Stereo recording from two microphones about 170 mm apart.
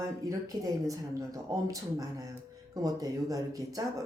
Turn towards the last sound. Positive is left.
turn(degrees=-20)  # may be behind; listen again after turning